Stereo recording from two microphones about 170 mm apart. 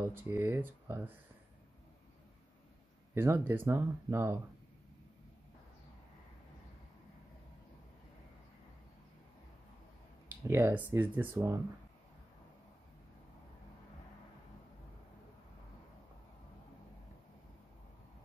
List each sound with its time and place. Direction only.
0.0 s speech: 15° right (ahead or behind)
3.2 s speech: 15° right (ahead or behind)
10.2 s speech: 10° right (ahead or behind)